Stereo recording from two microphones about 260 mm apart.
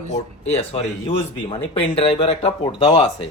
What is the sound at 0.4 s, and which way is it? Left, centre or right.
Speech, left.